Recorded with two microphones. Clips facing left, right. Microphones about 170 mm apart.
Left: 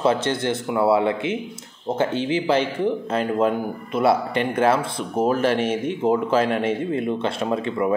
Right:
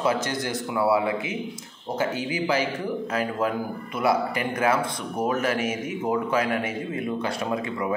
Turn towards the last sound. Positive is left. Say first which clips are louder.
# left 4 dB
turn(degrees=25)  # may be behind; listen again after turning